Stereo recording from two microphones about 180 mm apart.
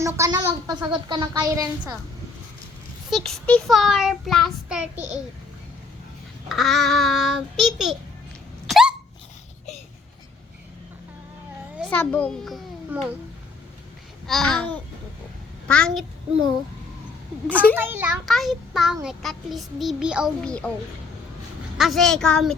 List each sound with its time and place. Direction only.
0.0 s speech: 15° right (ahead or behind)
3.1 s child singing: centre (ahead or behind)
6.5 s child singing: centre (ahead or behind)
8.6 s hiccup: centre (ahead or behind)
11.8 s child singing: 5° left (ahead or behind)
12.9 s a child's voice: 10° right (ahead or behind)
14.3 s child singing: centre (ahead or behind)
17.5 s a child's voice: 10° left (ahead or behind)
17.7 s a child's voice: 10° right (ahead or behind)
18.3 s child singing: centre (ahead or behind)
21.8 s child singing: centre (ahead or behind)